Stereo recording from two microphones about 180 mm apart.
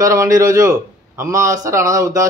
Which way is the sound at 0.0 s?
15° right (ahead or behind).